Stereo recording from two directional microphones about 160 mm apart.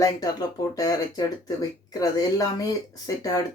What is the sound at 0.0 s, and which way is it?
Speech, 20° left (ahead or behind).